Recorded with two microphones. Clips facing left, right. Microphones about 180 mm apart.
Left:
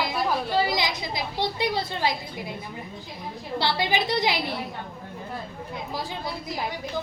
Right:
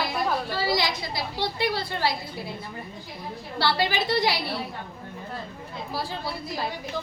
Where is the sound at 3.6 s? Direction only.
20° left (ahead or behind).